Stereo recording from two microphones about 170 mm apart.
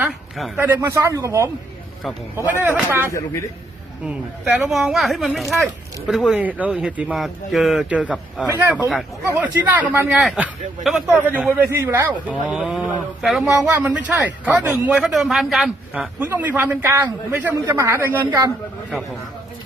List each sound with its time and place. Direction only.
0.3 s speech: 5° right (ahead or behind)
2.5 s speech: 10° right (ahead or behind)
3.1 s a man's voice: 15° left (ahead or behind)
4.0 s a man's voice: 5° right (ahead or behind)
11.7 s a man's voice: 15° right (ahead or behind)